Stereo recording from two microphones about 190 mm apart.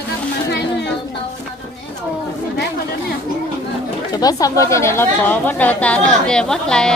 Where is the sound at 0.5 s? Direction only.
60° left (ahead or behind).